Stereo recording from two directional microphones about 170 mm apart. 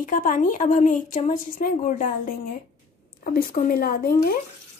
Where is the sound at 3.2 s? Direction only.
55° left (ahead or behind).